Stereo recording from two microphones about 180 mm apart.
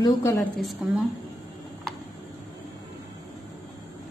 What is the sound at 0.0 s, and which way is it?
Speech, 20° left (ahead or behind).